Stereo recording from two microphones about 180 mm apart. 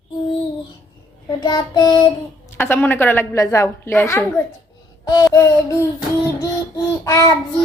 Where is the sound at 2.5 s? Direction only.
10° left (ahead or behind).